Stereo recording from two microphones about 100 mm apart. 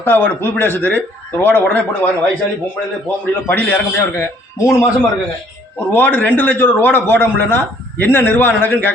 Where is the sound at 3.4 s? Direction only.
20° left (ahead or behind).